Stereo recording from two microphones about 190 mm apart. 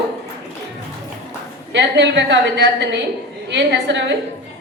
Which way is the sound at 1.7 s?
70° right (ahead or behind).